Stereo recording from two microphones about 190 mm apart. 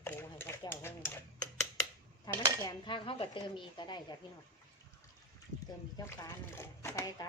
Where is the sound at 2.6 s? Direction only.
20° left (ahead or behind).